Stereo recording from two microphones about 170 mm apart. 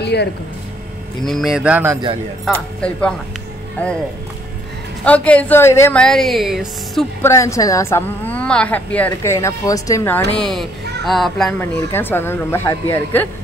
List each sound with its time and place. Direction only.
0.0 s a sound: 80° left
1.2 s speech: centre (ahead or behind)
2.8 s a woman's voice: 5° left (ahead or behind)
5.0 s a woman's voice: 10° left (ahead or behind)
6.0 s speech: centre (ahead or behind)
7.2 s a woman's voice: 15° left (ahead or behind); by 11.5 s centre (ahead or behind)
11.6 s a woman's voice: 10° left (ahead or behind)